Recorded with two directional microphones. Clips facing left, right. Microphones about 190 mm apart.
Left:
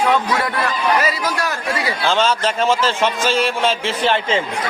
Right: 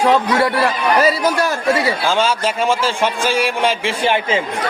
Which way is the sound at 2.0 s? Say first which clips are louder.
Even; 10° right (ahead or behind).